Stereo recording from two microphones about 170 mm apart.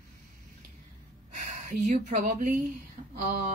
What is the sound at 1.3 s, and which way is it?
Speech, 45° right (ahead or behind).